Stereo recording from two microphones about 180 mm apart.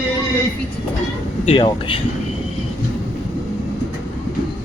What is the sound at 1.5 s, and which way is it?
Speech, 30° left (ahead or behind).